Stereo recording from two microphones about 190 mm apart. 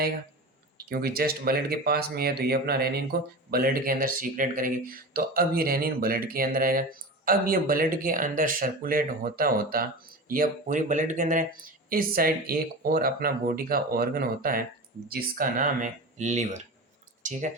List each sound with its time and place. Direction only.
0.9 s speech: 55° right (ahead or behind); by 16.6 s 35° right (ahead or behind)